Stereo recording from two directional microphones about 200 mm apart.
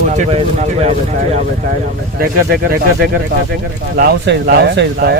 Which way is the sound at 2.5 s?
55° right (ahead or behind).